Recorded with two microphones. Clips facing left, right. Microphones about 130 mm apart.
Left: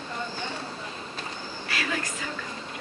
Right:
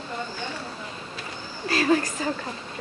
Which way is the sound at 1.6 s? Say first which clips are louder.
Right 10 dB; 35° right (ahead or behind).